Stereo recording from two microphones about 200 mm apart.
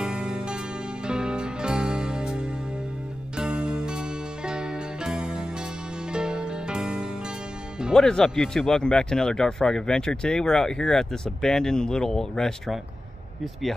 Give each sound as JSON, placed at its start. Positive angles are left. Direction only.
{"t": 0.0, "sound": "music", "side_deg": -5}
{"t": 7.8, "sound": "speech", "side_deg": 0}